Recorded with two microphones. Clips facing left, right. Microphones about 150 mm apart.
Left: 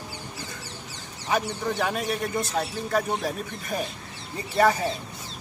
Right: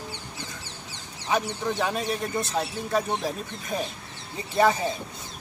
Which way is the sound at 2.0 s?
25° right (ahead or behind).